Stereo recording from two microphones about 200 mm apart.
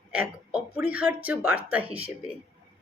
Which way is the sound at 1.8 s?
30° right (ahead or behind).